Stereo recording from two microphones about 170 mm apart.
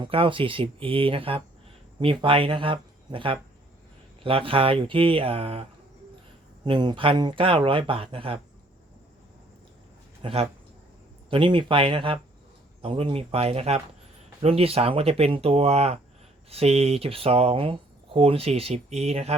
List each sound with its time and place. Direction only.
0.0 s speech: 30° right (ahead or behind)
6.7 s speech: 25° right (ahead or behind)
10.2 s speech: 30° right (ahead or behind)